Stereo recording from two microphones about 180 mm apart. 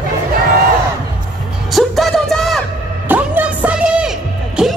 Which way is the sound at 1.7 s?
Centre (ahead or behind).